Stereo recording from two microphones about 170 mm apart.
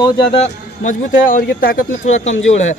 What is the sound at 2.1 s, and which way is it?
Speech, 40° left (ahead or behind).